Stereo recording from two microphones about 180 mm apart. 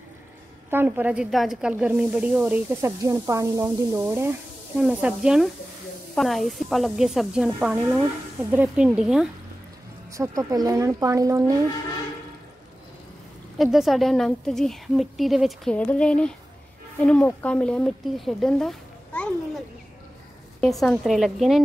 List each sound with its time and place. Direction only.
0.7 s a woman's voice: 10° right (ahead or behind)
10.1 s speech: 15° right (ahead or behind)
13.6 s a woman's voice: centre (ahead or behind)
20.6 s a woman's voice: centre (ahead or behind)